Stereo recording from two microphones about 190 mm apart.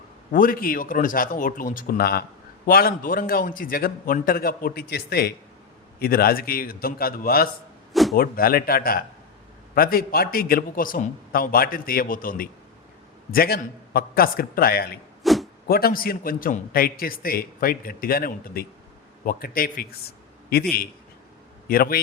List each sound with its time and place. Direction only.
0.3 s a man's voice: 45° left (ahead or behind)
15.2 s zipper: centre (ahead or behind)
15.6 s a man's voice: 55° left (ahead or behind)
21.7 s a man's voice: 50° left (ahead or behind)